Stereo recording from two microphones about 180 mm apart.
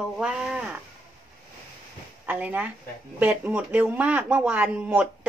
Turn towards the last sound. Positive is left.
turn(degrees=-10)  # may be behind; listen again after turning